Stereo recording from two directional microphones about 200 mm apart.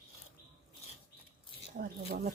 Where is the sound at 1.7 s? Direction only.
50° right (ahead or behind).